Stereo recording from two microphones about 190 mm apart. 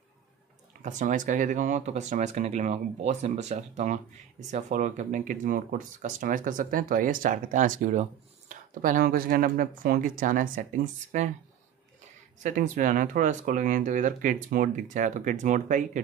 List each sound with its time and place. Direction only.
0.8 s speech: 40° right (ahead or behind)
12.4 s speech: 40° right (ahead or behind)